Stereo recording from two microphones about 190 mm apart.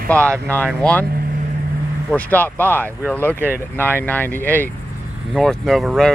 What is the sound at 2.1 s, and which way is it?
Speech, 10° left (ahead or behind).